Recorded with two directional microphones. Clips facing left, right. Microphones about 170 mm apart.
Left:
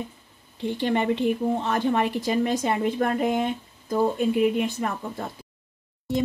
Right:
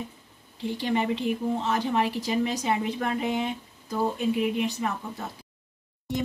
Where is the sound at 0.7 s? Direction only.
55° left (ahead or behind).